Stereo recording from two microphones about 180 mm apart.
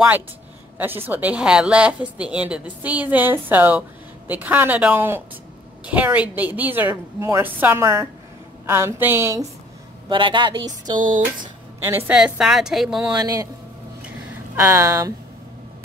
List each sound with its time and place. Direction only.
0.7 s a woman's voice: 10° right (ahead or behind)
10.0 s speech: 25° right (ahead or behind)
11.8 s speech: 10° right (ahead or behind)
13.1 s speech: 20° right (ahead or behind)
14.0 s a sound: 15° right (ahead or behind)